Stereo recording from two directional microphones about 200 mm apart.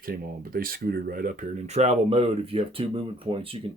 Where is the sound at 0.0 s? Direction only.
45° right (ahead or behind).